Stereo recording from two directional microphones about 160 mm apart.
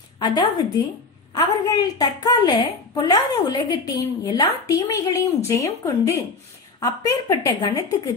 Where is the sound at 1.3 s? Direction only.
25° left (ahead or behind).